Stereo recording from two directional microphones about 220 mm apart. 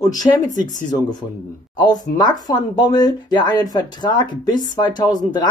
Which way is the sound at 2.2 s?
20° left (ahead or behind).